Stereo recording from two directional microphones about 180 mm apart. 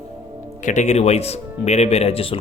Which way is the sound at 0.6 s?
40° left (ahead or behind).